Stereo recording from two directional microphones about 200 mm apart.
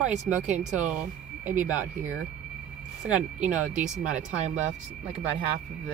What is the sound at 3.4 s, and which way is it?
Speech, 35° right (ahead or behind).